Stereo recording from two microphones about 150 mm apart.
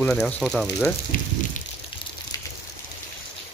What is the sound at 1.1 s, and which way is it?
Speech, 65° left (ahead or behind).